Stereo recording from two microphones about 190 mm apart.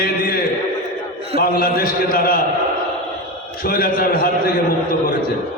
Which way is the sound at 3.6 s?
50° left (ahead or behind).